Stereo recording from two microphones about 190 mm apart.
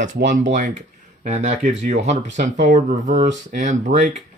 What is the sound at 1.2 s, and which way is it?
Speech, 35° right (ahead or behind).